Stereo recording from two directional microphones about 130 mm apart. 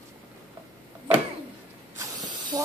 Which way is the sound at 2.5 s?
30° right (ahead or behind).